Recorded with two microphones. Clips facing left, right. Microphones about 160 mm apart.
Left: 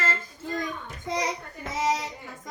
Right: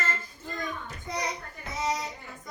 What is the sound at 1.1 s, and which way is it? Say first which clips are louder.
Child singing: left 4 dB; 90° left.